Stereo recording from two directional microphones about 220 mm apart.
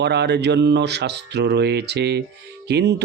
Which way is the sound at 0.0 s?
50° right (ahead or behind).